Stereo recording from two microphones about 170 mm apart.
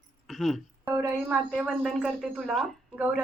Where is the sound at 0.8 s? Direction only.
15° right (ahead or behind).